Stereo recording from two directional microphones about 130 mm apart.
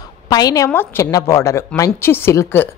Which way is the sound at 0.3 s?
30° left (ahead or behind).